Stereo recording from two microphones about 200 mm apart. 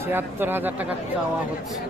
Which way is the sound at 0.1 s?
10° right (ahead or behind).